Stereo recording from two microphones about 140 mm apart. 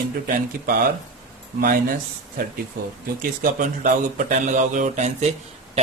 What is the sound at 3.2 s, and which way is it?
Speech, 75° right (ahead or behind).